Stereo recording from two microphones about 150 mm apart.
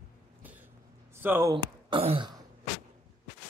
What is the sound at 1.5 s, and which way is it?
Speech, 35° right (ahead or behind).